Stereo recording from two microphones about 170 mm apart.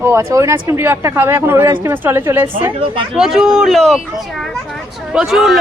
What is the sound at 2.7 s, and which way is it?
Speech, 30° right (ahead or behind).